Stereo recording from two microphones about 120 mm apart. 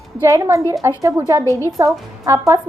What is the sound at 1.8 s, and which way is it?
Speech, 25° right (ahead or behind).